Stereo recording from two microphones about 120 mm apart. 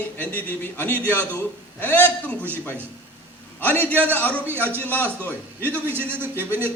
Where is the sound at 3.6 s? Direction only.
15° left (ahead or behind).